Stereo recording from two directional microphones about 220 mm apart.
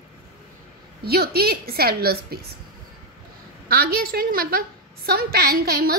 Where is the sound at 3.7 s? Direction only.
45° right (ahead or behind).